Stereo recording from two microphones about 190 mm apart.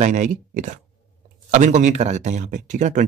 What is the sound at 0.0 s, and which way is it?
Speech, 40° right (ahead or behind).